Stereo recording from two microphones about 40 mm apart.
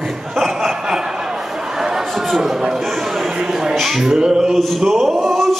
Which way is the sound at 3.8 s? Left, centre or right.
Centre.